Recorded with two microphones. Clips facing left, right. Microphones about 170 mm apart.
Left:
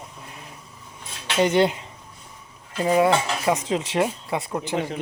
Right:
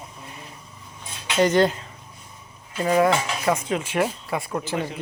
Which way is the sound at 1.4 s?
10° left (ahead or behind).